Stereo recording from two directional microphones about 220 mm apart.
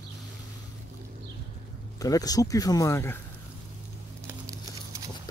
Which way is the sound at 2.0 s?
15° left (ahead or behind).